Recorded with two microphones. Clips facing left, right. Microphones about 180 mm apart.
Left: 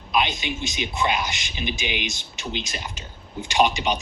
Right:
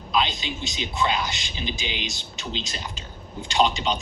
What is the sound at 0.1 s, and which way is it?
Speech, 15° left (ahead or behind).